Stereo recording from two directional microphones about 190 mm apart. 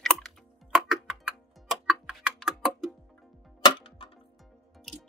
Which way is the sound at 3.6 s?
25° left (ahead or behind).